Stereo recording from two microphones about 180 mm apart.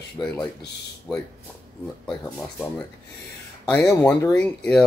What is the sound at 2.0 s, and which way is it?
Speech, 5° left (ahead or behind).